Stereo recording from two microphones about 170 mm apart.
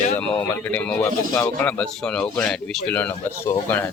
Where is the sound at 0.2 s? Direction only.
10° left (ahead or behind).